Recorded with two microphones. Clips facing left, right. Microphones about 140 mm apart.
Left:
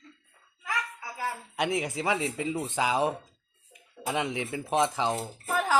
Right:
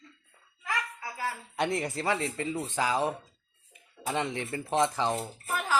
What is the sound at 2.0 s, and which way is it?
Speech, 10° left (ahead or behind).